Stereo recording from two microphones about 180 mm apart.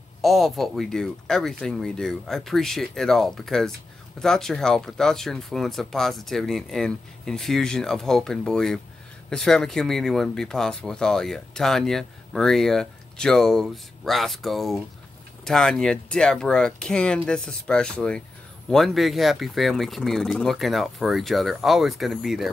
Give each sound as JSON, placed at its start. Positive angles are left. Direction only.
{"t": 0.2, "sound": "speech", "side_deg": 0}